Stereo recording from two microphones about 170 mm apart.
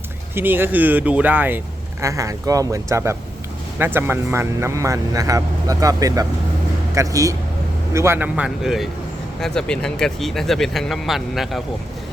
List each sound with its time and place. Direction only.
0.3 s speech: 10° right (ahead or behind)